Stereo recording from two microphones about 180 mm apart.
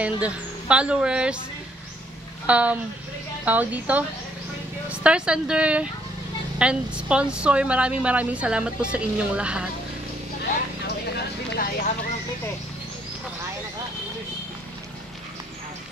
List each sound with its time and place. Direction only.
0.0 s speech: 5° right (ahead or behind)
2.4 s a woman's voice: 5° right (ahead or behind)
11.5 s speech: 55° left (ahead or behind)